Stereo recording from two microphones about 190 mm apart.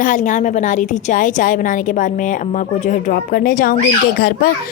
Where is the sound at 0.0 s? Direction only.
40° left (ahead or behind).